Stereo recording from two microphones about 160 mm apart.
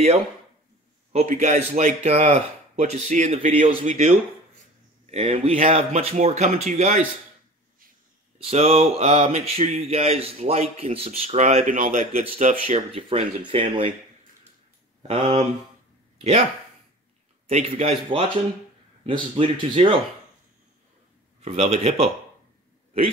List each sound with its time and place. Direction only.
1.1 s speech: 50° right (ahead or behind)
5.1 s speech: 35° right (ahead or behind)
8.5 s speech: 40° right (ahead or behind)
13.5 s speech: 35° right (ahead or behind)
15.0 s speech: 40° right (ahead or behind)
17.5 s speech: 40° right (ahead or behind)
21.4 s speech: 40° right (ahead or behind)